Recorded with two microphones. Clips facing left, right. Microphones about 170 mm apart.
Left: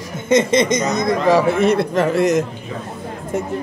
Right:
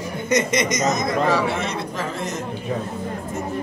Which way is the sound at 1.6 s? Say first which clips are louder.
Left 11 dB; 65° left (ahead or behind).